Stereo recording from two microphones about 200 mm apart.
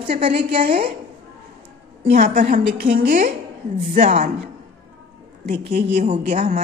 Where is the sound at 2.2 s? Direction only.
40° right (ahead or behind).